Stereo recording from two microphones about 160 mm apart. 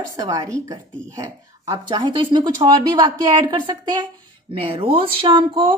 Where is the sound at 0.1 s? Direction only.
25° right (ahead or behind).